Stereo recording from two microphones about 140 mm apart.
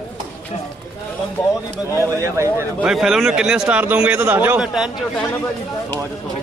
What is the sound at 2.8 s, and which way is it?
A man's voice, centre (ahead or behind).